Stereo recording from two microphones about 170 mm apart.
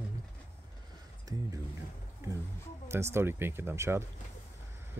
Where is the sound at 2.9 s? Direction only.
15° right (ahead or behind).